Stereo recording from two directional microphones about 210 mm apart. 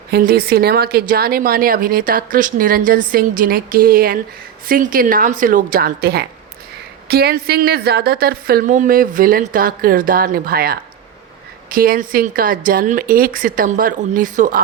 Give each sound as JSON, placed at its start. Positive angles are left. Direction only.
{"t": 0.1, "sound": "speech", "side_deg": -45}